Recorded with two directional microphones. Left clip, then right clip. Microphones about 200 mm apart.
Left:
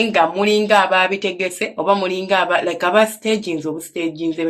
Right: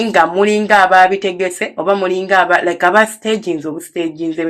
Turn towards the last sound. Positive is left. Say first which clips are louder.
# right 3 dB
turn(degrees=-10)  # may be behind; listen again after turning